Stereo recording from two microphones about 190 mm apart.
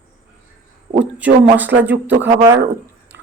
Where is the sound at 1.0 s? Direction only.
5° right (ahead or behind).